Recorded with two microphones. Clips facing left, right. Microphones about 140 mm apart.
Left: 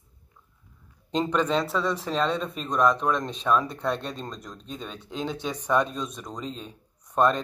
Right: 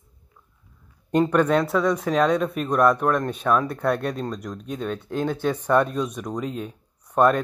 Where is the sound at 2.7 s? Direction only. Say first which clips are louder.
Right 3 dB; 60° right (ahead or behind).